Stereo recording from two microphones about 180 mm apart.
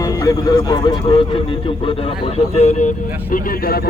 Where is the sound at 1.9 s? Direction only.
35° left (ahead or behind).